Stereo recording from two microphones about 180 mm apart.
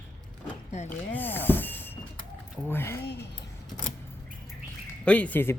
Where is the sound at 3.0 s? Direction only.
65° left (ahead or behind).